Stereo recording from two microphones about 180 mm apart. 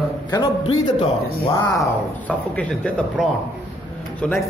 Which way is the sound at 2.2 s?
5° left (ahead or behind).